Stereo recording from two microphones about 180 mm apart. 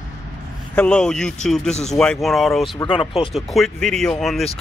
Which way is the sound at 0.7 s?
5° left (ahead or behind).